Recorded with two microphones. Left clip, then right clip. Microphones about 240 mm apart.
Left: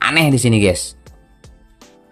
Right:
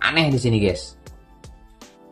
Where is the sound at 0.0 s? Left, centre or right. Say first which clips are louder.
Left 5 dB; left.